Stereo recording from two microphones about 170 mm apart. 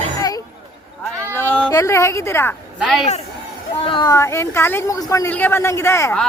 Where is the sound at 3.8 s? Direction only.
25° left (ahead or behind).